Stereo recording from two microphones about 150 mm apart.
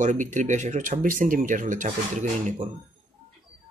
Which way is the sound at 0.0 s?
55° right (ahead or behind).